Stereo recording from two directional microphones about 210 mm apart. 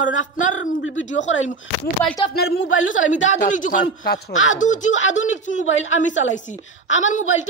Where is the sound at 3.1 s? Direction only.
35° left (ahead or behind).